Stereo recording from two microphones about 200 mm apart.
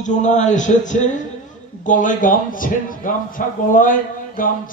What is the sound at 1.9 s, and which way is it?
Speech, 40° left (ahead or behind).